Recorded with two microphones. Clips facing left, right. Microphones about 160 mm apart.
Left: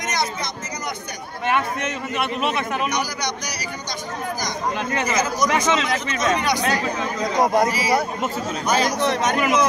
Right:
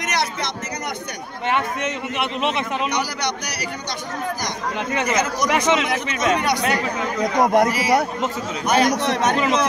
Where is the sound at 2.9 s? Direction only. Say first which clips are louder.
Right 1 dB; 65° right (ahead or behind).